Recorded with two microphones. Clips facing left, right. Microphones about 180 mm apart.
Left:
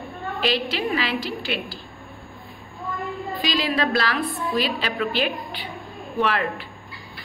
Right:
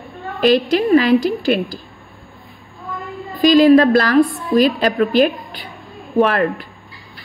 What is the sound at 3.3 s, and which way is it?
A woman's voice, 45° right (ahead or behind).